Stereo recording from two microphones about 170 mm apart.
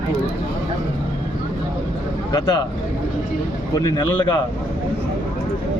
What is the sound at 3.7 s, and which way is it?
Speech, 20° left (ahead or behind).